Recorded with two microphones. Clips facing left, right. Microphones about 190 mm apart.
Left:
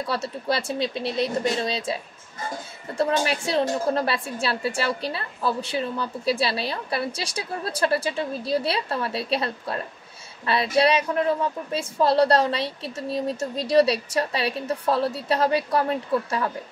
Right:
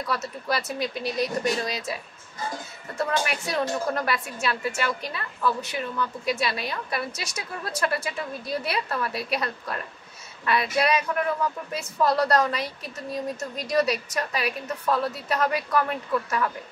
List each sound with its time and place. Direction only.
0.0 s speech: 30° left (ahead or behind)
3.0 s a woman's voice: 30° left (ahead or behind)